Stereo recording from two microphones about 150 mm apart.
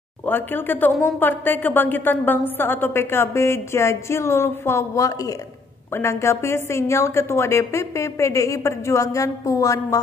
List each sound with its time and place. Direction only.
0.2 s a woman's voice: 15° left (ahead or behind)